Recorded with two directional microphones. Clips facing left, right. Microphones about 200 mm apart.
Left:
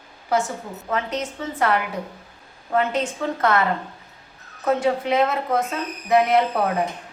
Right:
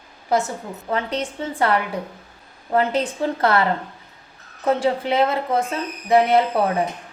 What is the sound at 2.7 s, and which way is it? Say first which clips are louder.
Speech: right 2 dB; 35° right (ahead or behind).